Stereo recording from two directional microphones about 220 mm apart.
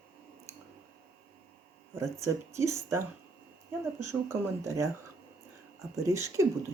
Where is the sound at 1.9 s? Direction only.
10° right (ahead or behind).